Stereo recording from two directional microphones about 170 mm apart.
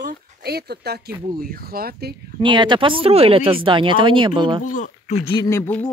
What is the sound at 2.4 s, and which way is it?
Speech, 30° right (ahead or behind).